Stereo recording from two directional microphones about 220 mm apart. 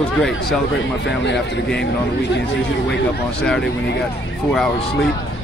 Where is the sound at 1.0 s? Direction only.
50° left (ahead or behind).